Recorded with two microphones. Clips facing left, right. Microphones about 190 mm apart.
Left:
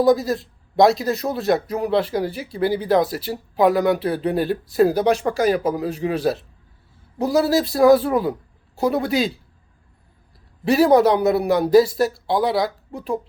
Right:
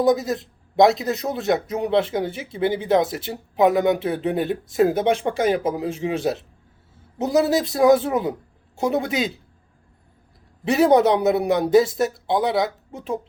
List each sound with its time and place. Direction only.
0.0 s speech: 20° right (ahead or behind)
10.7 s speech: 20° right (ahead or behind)